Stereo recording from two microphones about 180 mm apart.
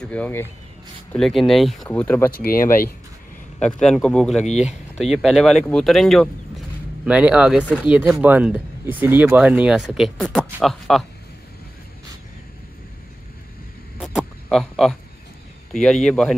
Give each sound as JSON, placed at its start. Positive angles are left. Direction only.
{"t": 0.1, "sound": "speech", "side_deg": 10}
{"t": 1.9, "sound": "speech", "side_deg": 10}
{"t": 2.3, "sound": "speech", "side_deg": 55}
{"t": 3.5, "sound": "speech", "side_deg": 5}
{"t": 4.5, "sound": "speech", "side_deg": 40}
{"t": 4.9, "sound": "speech", "side_deg": 0}
{"t": 13.9, "sound": "a sound", "side_deg": 0}
{"t": 15.7, "sound": "speech", "side_deg": 5}